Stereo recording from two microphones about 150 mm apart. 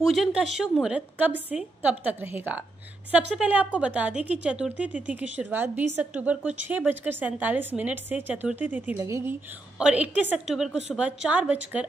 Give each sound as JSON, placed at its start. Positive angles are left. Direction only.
{"t": 0.0, "sound": "a woman's voice", "side_deg": 0}